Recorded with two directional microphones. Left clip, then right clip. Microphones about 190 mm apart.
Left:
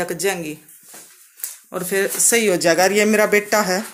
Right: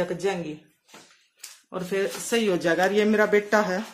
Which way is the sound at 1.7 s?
15° left (ahead or behind).